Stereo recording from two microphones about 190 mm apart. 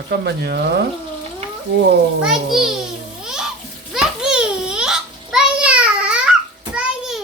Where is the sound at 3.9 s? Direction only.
5° right (ahead or behind).